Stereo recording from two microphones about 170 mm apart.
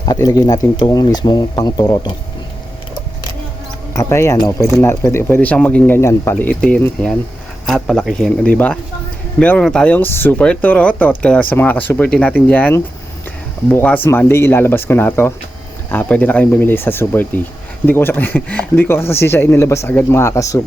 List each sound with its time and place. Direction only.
0.0 s speech: 20° left (ahead or behind)
3.9 s speech: 15° left (ahead or behind)